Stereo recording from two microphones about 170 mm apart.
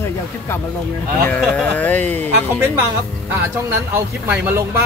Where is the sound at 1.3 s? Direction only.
5° left (ahead or behind).